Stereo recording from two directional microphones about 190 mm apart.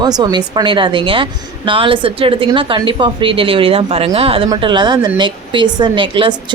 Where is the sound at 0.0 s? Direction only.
20° right (ahead or behind).